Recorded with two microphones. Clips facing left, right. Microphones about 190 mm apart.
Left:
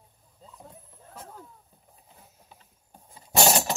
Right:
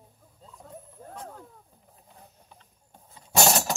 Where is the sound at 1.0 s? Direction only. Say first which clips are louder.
Right 9 dB; 45° right (ahead or behind).